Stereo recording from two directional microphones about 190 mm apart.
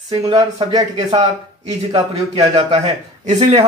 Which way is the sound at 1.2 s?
35° right (ahead or behind).